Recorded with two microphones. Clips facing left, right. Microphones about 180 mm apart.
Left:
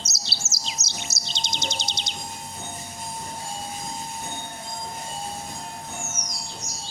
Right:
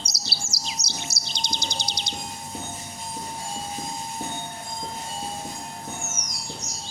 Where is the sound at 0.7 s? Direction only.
20° left (ahead or behind).